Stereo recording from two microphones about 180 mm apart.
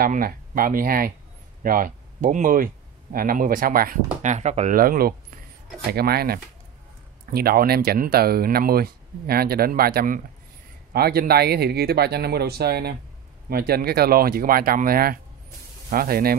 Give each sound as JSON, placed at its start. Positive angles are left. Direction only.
{"t": 0.0, "sound": "speech", "side_deg": -50}